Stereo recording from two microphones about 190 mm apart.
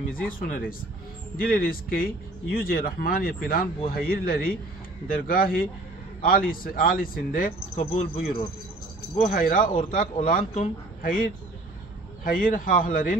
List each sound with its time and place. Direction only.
0.1 s a man's voice: 50° left (ahead or behind)
7.7 s speech: 30° left (ahead or behind)
9.1 s a man's voice: 45° left (ahead or behind)